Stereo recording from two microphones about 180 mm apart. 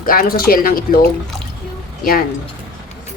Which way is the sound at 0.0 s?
55° left (ahead or behind).